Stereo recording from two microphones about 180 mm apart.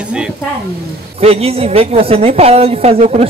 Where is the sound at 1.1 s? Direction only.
35° right (ahead or behind).